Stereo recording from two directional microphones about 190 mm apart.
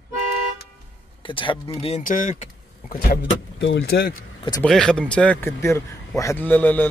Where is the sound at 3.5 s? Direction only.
80° left; by 4.1 s 55° left (ahead or behind).